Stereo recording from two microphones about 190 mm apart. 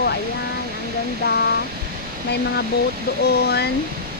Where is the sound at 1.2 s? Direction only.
55° left (ahead or behind).